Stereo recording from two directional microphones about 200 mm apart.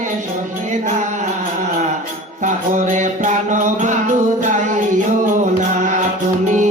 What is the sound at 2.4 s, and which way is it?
Music, 40° right (ahead or behind).